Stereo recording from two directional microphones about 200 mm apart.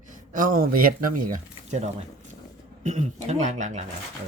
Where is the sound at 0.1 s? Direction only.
40° right (ahead or behind).